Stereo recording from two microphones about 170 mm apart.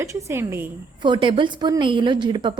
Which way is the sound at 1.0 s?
30° right (ahead or behind).